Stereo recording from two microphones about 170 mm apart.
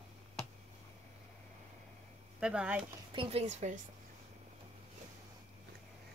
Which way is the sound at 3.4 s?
45° right (ahead or behind).